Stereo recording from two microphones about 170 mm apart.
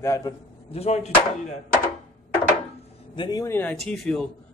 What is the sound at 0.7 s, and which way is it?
Speech, 40° left (ahead or behind).